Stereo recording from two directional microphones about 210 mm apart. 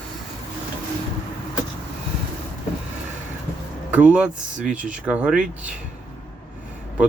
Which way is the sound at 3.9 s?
5° right (ahead or behind).